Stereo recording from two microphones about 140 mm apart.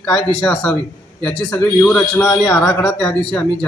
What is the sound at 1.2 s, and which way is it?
A man's voice, 5° left (ahead or behind).